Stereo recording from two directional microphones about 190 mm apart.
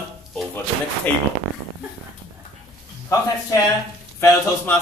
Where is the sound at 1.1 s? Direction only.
10° left (ahead or behind).